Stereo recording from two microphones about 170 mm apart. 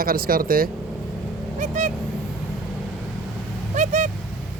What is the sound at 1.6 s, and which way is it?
Speech, 45° right (ahead or behind).